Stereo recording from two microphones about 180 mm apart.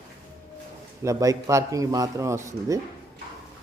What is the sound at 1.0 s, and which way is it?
A man's voice, 20° right (ahead or behind).